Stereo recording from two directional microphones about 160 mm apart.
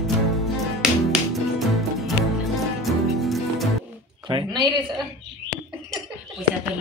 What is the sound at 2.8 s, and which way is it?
Music, centre (ahead or behind).